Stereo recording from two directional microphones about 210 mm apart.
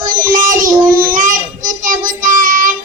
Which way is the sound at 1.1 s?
40° right (ahead or behind).